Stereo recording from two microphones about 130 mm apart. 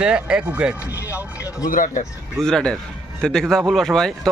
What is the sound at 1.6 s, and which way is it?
Speech, 90° left.